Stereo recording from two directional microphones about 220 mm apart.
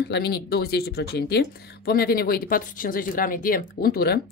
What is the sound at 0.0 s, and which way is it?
Speech, 45° left (ahead or behind).